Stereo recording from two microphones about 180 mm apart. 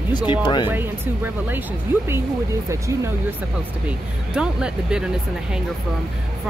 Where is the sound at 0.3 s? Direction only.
25° left (ahead or behind).